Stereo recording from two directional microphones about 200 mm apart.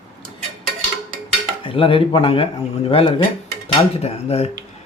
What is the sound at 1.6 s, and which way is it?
Speech, 25° left (ahead or behind).